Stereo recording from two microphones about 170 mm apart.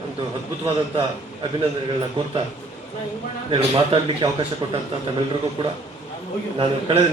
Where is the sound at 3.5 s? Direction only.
30° right (ahead or behind).